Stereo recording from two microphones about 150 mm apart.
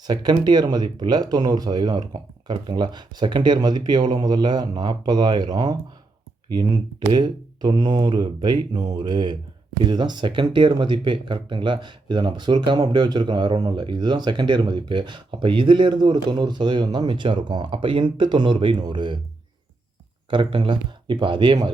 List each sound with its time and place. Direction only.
0.1 s speech: 25° right (ahead or behind)
20.3 s speech: 35° right (ahead or behind)